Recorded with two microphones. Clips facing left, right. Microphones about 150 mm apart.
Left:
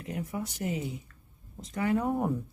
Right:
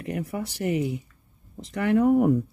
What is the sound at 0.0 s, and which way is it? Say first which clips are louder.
Speech: right 5 dB; 75° right (ahead or behind).